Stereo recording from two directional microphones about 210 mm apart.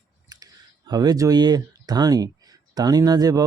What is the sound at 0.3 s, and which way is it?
Speech, 20° right (ahead or behind).